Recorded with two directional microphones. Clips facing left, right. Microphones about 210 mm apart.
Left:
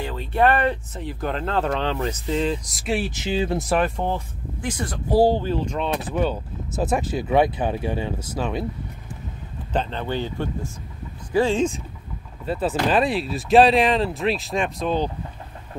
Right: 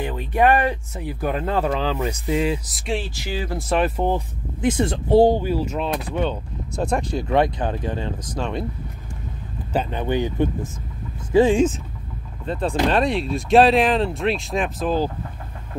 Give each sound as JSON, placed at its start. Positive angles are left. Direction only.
{"t": 0.0, "sound": "speech", "side_deg": -15}
{"t": 3.1, "sound": "speech", "side_deg": 20}
{"t": 3.6, "sound": "speech", "side_deg": 0}
{"t": 4.6, "sound": "speech", "side_deg": -25}
{"t": 9.7, "sound": "speech", "side_deg": -10}
{"t": 12.4, "sound": "speech", "side_deg": 5}